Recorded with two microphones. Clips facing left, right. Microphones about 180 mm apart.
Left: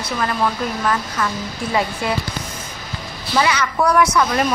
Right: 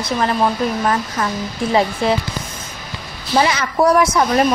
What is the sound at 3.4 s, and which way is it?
Speech, 30° right (ahead or behind).